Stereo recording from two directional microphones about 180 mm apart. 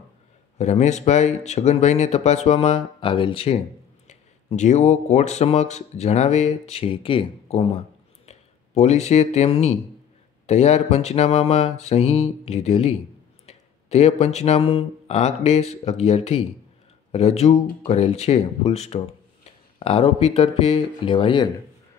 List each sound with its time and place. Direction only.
0.6 s speech: 40° left (ahead or behind)